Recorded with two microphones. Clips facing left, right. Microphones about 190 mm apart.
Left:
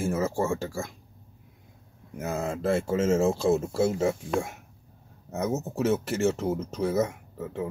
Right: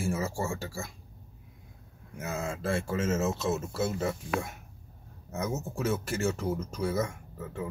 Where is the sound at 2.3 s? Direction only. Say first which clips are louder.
Left 4 dB; 40° left (ahead or behind).